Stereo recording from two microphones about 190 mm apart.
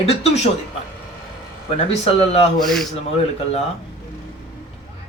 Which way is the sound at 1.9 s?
35° left (ahead or behind).